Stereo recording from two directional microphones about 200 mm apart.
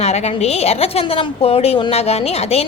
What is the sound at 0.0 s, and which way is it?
A woman's voice, 30° left (ahead or behind).